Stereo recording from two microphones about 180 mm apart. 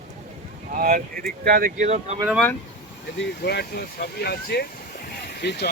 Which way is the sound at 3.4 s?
65° left (ahead or behind).